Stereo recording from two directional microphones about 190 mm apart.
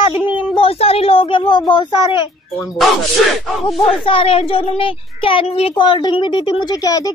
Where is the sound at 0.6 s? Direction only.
30° left (ahead or behind).